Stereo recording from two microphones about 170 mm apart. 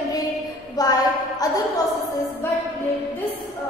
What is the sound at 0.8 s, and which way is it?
A woman's voice, 20° left (ahead or behind).